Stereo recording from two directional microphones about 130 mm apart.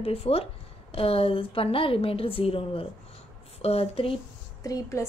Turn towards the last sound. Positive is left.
turn(degrees=25)  # may be behind; listen again after turning